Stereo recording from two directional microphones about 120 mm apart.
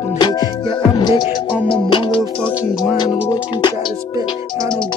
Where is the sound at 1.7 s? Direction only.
50° left (ahead or behind).